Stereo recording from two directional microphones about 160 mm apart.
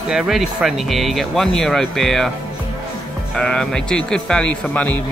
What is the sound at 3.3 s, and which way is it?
Speech, 5° left (ahead or behind).